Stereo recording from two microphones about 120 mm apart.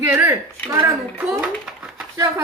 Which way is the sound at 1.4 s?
5° right (ahead or behind).